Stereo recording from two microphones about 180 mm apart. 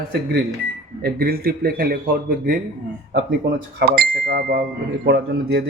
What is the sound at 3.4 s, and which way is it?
Speech, 90° right.